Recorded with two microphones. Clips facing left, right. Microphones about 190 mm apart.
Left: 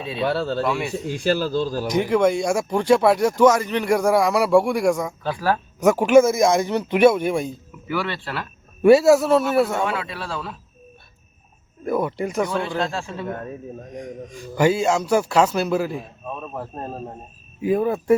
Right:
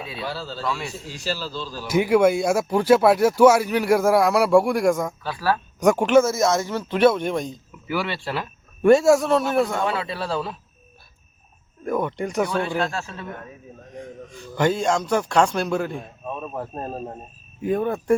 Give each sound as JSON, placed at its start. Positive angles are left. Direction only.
{"t": 0.3, "sound": "speech", "side_deg": 60}
{"t": 0.6, "sound": "a man's voice", "side_deg": 10}
{"t": 0.9, "sound": "speech", "side_deg": 55}
{"t": 1.9, "sound": "a man's voice", "side_deg": -10}
{"t": 5.2, "sound": "speech", "side_deg": 20}
{"t": 5.8, "sound": "a man's voice", "side_deg": 5}
{"t": 7.9, "sound": "speech", "side_deg": -5}
{"t": 8.8, "sound": "a man's voice", "side_deg": 5}
{"t": 9.9, "sound": "speech", "side_deg": -35}
{"t": 11.9, "sound": "a man's voice", "side_deg": 5}
{"t": 12.5, "sound": "a man's voice", "side_deg": 15}
{"t": 13.2, "sound": "speech", "side_deg": 45}
{"t": 13.9, "sound": "a man's voice", "side_deg": 15}